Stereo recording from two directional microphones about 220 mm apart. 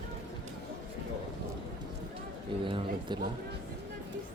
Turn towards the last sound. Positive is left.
turn(degrees=-20)  # may be behind; listen again after turning